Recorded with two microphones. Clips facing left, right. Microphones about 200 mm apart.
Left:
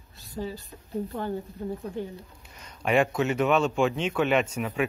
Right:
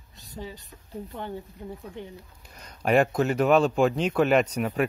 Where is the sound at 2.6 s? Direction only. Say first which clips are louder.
Right 2 dB; 40° right (ahead or behind).